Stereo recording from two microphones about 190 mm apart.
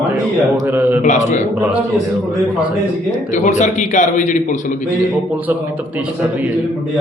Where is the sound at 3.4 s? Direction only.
40° left (ahead or behind).